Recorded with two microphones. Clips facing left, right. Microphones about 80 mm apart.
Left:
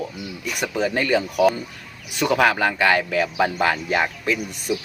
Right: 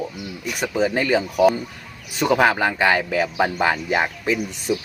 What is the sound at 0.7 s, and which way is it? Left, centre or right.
Speech, right.